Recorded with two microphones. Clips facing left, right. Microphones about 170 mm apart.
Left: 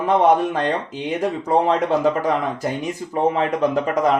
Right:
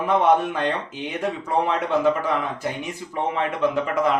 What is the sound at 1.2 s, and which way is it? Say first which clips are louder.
Speech: left 4 dB; 40° left (ahead or behind).